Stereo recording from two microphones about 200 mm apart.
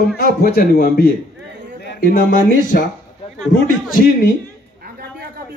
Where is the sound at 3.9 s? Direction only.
50° left (ahead or behind).